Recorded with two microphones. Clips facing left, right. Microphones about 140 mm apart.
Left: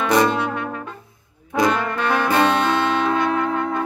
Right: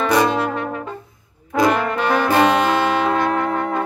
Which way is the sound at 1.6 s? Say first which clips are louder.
Right 2 dB; 15° right (ahead or behind).